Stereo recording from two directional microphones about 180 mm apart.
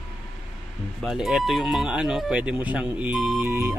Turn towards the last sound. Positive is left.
turn(degrees=-10)  # may be behind; listen again after turning